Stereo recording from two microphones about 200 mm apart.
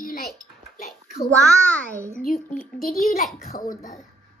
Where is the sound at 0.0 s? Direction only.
45° left (ahead or behind).